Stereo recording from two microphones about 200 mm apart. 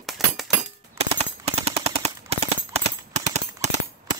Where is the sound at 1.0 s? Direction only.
30° right (ahead or behind).